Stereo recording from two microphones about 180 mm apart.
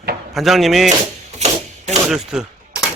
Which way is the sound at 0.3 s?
Centre (ahead or behind).